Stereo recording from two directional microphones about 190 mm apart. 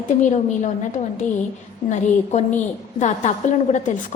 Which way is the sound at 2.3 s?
35° left (ahead or behind).